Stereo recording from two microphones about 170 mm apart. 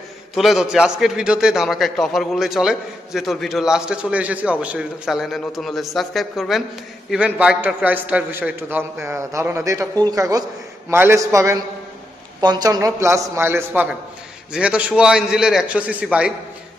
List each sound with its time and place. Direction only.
0.3 s a man's voice: centre (ahead or behind)